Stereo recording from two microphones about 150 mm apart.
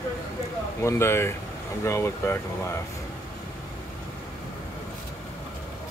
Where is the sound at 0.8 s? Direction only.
15° left (ahead or behind).